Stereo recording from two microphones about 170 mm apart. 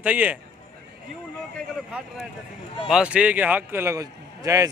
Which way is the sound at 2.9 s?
5° right (ahead or behind).